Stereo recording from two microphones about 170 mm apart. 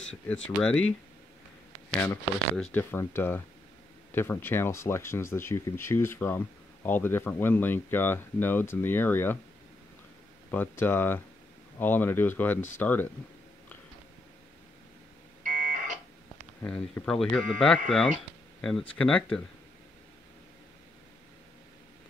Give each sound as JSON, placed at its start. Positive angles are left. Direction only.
{"t": 0.6, "sound": "speech", "side_deg": 5}
{"t": 2.5, "sound": "speech", "side_deg": 5}
{"t": 10.5, "sound": "speech", "side_deg": 10}
{"t": 15.4, "sound": "a sound", "side_deg": -50}
{"t": 16.6, "sound": "speech", "side_deg": 10}